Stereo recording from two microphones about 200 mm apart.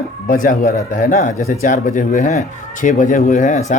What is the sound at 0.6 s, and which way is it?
Speech, 15° left (ahead or behind).